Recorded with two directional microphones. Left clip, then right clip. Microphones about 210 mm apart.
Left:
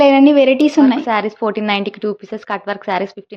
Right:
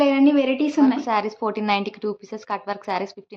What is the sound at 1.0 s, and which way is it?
Speech, 15° left (ahead or behind).